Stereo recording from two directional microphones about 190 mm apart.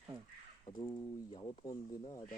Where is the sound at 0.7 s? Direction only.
25° left (ahead or behind).